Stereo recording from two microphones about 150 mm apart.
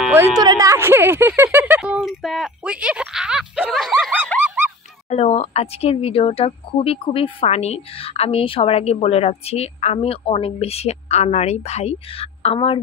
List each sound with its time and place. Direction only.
0.0 s a sound: 15° right (ahead or behind)
0.4 s speech: 25° right (ahead or behind); by 4.6 s 10° right (ahead or behind)
5.1 s speech: 45° left (ahead or behind)